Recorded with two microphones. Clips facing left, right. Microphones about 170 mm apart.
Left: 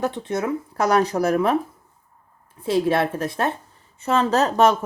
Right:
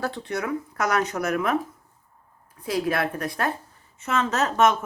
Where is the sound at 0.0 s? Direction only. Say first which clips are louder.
Left 4 dB; 20° left (ahead or behind).